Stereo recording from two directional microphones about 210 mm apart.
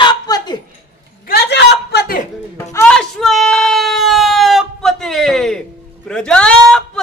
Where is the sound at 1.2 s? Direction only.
50° left (ahead or behind).